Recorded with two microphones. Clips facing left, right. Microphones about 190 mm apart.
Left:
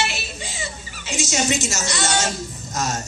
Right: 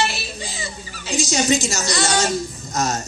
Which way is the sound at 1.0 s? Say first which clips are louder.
Right 3 dB; 35° right (ahead or behind).